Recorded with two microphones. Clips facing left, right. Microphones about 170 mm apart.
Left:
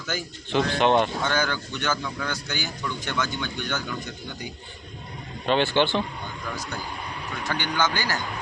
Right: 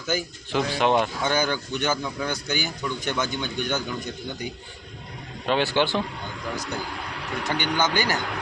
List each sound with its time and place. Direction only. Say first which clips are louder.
0.1 s speech: right 1 dB; 5° right (ahead or behind)
5.5 s speech: left 1 dB; 5° right (ahead or behind)
7.4 s speech: right 1 dB; 15° right (ahead or behind)